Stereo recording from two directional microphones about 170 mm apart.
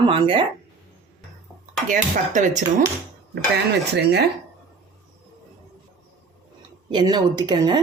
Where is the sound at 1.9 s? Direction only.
50° right (ahead or behind).